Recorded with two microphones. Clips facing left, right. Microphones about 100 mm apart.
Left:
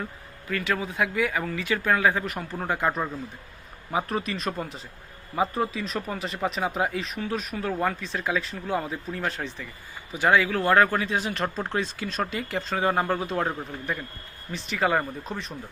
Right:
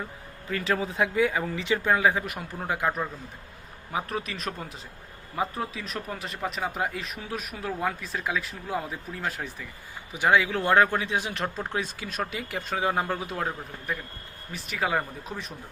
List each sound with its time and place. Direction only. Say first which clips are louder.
0.5 s speech: even; 30° right (ahead or behind); by 2.6 s 15° right (ahead or behind)
2.6 s speech: left 2 dB; 5° right (ahead or behind)
3.9 s speech: left 4 dB; centre (ahead or behind)